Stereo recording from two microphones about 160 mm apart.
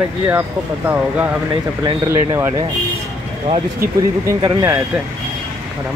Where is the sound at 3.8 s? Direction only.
15° right (ahead or behind).